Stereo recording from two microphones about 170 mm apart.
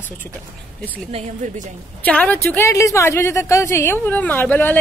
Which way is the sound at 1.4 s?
45° right (ahead or behind).